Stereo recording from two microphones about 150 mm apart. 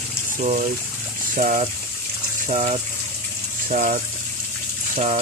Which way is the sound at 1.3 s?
55° right (ahead or behind).